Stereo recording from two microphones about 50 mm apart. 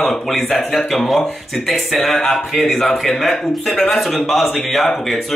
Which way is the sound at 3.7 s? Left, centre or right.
Centre.